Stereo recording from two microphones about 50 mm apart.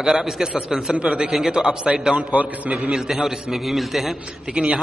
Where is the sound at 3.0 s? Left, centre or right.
Centre.